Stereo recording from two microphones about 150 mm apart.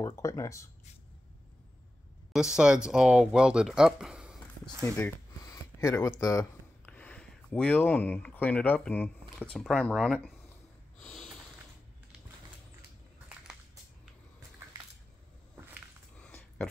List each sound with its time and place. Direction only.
0.0 s speech: 20° left (ahead or behind)
2.3 s speech: 5° right (ahead or behind)
4.9 s speech: 20° left (ahead or behind); by 10.3 s centre (ahead or behind)
11.0 s snort: 5° left (ahead or behind)
16.2 s a sound: 10° left (ahead or behind)